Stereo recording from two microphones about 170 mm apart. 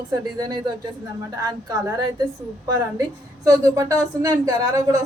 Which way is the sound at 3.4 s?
20° right (ahead or behind).